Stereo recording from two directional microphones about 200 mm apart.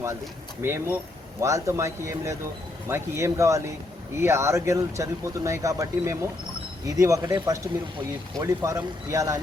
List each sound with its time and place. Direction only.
0.6 s speech: 10° right (ahead or behind)